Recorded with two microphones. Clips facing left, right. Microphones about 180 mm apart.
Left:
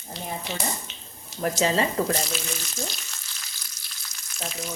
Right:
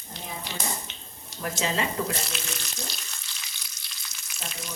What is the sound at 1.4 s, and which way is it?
Speech, 35° left (ahead or behind).